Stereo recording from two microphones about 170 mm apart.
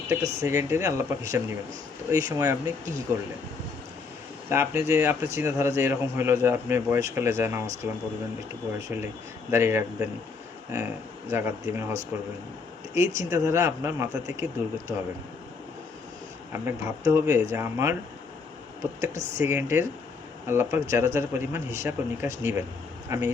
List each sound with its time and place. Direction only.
0.1 s a man's voice: 15° right (ahead or behind)
4.4 s a man's voice: 15° right (ahead or behind)
9.5 s a man's voice: 15° right (ahead or behind)
16.5 s a man's voice: 15° right (ahead or behind)
19.1 s speech: 40° right (ahead or behind)
19.4 s a man's voice: 15° right (ahead or behind)